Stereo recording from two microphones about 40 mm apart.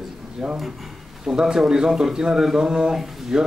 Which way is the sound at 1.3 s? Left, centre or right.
Centre.